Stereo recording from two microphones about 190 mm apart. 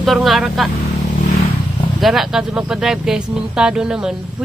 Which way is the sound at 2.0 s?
Centre (ahead or behind).